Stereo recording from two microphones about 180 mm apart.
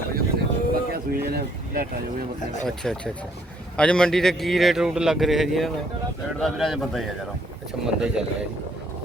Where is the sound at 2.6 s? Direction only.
Centre (ahead or behind).